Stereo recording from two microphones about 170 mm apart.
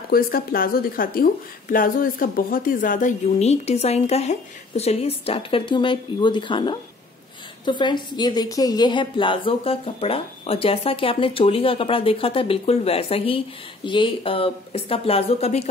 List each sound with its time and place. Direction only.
0.1 s speech: 60° left (ahead or behind); by 15.7 s 40° left (ahead or behind)